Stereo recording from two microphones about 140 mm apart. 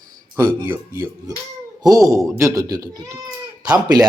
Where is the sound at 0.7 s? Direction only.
20° right (ahead or behind).